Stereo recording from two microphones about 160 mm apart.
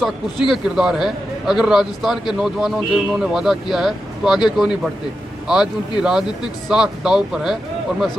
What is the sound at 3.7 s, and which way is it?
A man's voice, centre (ahead or behind).